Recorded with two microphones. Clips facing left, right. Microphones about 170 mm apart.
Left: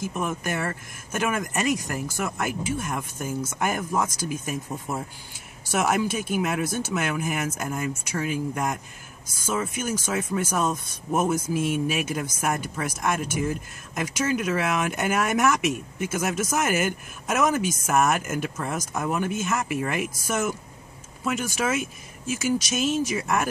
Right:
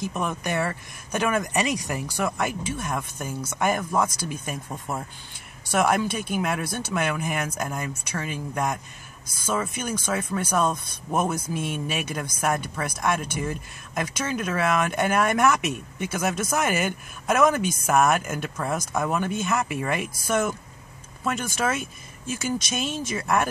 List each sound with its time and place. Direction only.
0.0 s speech: 5° left (ahead or behind)